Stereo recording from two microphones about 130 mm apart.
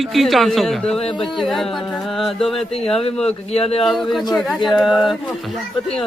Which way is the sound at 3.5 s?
50° left (ahead or behind).